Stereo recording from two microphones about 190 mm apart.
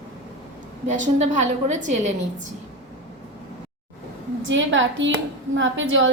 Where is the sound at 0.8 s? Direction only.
40° right (ahead or behind).